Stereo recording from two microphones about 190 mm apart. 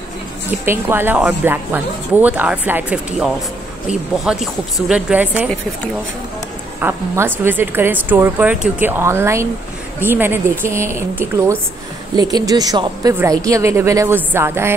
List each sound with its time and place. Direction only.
0.5 s speech: 10° right (ahead or behind)
6.8 s a woman's voice: 10° right (ahead or behind)